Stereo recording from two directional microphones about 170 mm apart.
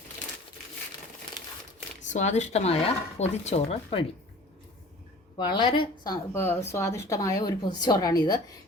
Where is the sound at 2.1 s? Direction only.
45° left (ahead or behind).